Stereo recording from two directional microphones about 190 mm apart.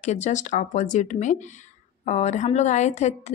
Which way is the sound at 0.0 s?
35° left (ahead or behind).